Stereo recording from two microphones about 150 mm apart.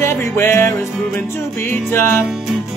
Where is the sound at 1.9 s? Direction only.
15° left (ahead or behind).